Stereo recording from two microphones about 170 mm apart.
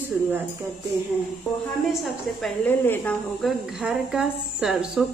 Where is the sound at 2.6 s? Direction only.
10° left (ahead or behind).